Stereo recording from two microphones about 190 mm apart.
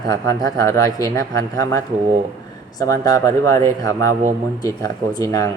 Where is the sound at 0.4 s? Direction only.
15° left (ahead or behind).